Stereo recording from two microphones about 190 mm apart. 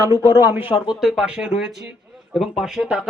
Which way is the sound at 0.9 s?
5° right (ahead or behind).